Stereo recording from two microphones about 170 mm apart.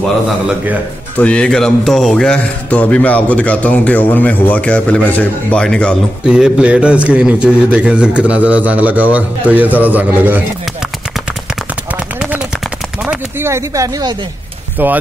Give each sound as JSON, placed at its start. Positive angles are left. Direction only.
{"t": 1.1, "sound": "speech", "side_deg": 5}
{"t": 6.2, "sound": "a man's voice", "side_deg": -5}
{"t": 13.0, "sound": "speech", "side_deg": -10}